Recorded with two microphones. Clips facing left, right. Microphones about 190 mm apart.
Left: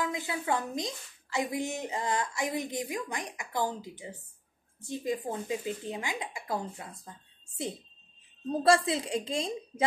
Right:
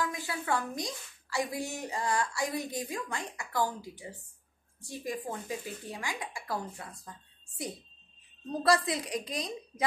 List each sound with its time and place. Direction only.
0.0 s a woman's voice: 20° left (ahead or behind)